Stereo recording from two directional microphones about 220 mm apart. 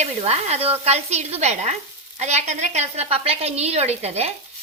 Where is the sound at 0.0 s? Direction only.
30° right (ahead or behind).